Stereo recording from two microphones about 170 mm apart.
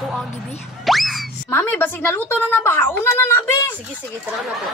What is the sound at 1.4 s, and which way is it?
A woman's voice, 15° left (ahead or behind).